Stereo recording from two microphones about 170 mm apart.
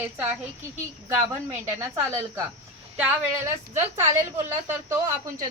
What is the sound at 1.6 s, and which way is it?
Speech, 15° right (ahead or behind).